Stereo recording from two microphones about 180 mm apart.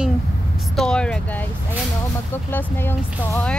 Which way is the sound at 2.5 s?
10° left (ahead or behind).